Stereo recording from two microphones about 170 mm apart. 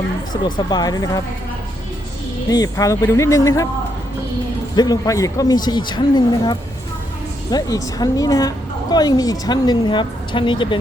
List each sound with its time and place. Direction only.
0.4 s a woman's voice: 25° left (ahead or behind)
2.5 s a woman's voice: 20° left (ahead or behind)
4.7 s a woman's voice: 25° left (ahead or behind)